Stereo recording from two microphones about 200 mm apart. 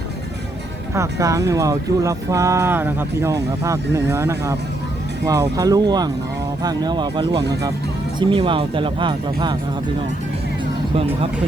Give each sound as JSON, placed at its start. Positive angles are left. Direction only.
{"t": 0.9, "sound": "speech", "side_deg": -15}
{"t": 10.9, "sound": "speech", "side_deg": -30}